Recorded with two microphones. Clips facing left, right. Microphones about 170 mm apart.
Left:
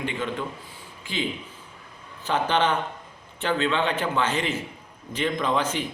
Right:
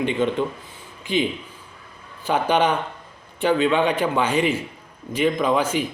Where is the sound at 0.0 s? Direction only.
20° right (ahead or behind).